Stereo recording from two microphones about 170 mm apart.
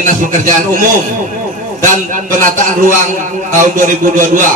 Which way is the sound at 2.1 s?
50° right (ahead or behind).